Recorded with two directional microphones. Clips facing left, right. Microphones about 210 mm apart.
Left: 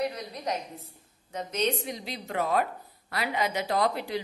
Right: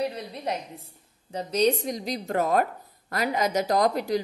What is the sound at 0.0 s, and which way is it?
A woman's voice, 30° right (ahead or behind).